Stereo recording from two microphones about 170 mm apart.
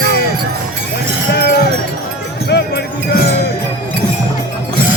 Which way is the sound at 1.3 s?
70° left (ahead or behind).